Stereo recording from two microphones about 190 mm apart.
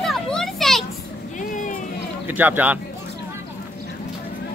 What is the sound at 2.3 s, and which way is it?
Speech, 10° right (ahead or behind).